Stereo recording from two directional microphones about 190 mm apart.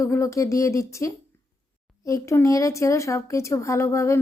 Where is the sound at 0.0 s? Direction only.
15° left (ahead or behind).